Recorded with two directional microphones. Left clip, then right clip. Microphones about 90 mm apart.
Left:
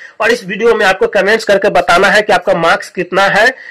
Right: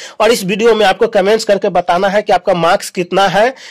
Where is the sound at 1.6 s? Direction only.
25° right (ahead or behind).